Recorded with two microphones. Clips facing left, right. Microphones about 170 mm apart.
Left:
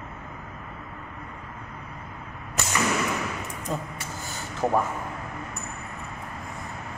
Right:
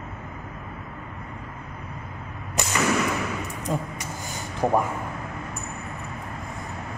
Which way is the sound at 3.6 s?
15° right (ahead or behind).